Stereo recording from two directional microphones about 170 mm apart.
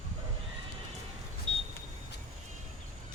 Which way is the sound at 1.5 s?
30° right (ahead or behind).